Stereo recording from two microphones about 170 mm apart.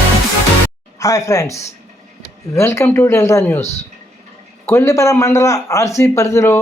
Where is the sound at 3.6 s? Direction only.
40° left (ahead or behind).